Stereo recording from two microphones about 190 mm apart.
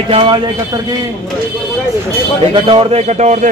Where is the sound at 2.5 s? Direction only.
30° right (ahead or behind).